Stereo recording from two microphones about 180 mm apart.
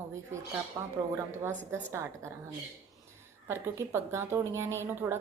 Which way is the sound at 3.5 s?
15° right (ahead or behind).